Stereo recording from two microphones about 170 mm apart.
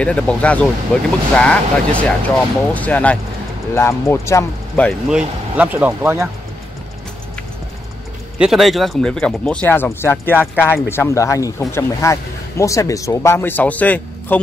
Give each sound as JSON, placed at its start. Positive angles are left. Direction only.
{"t": 0.0, "sound": "speech", "side_deg": 5}
{"t": 4.8, "sound": "speech", "side_deg": -5}
{"t": 8.4, "sound": "speech", "side_deg": 0}